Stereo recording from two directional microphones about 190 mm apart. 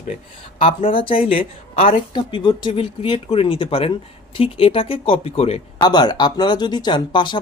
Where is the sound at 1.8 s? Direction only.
45° left (ahead or behind).